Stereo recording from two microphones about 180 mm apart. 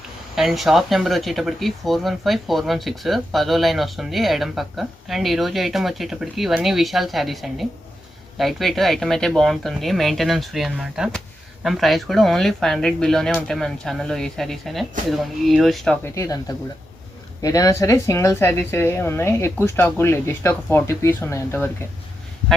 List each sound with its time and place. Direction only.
0.3 s speech: centre (ahead or behind)
16.1 s a woman's voice: 20° left (ahead or behind)